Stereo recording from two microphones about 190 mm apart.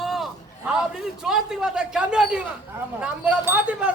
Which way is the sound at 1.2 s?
Centre (ahead or behind).